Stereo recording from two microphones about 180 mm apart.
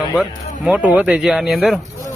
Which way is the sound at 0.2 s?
5° right (ahead or behind).